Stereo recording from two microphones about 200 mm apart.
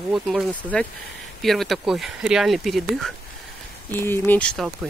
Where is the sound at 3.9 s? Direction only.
10° left (ahead or behind).